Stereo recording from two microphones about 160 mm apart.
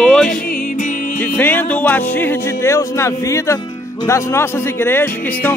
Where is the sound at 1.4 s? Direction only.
10° left (ahead or behind).